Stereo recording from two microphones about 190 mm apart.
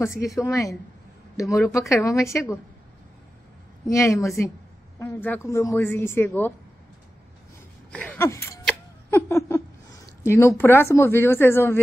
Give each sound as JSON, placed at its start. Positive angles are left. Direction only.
{"t": 0.4, "sound": "speech", "side_deg": 15}
{"t": 3.8, "sound": "speech", "side_deg": 15}
{"t": 7.9, "sound": "a sound", "side_deg": 5}
{"t": 9.1, "sound": "laughter", "side_deg": 15}
{"t": 10.2, "sound": "a woman's voice", "side_deg": 15}